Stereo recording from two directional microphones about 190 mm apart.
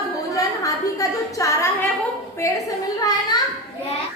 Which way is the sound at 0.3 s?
15° left (ahead or behind).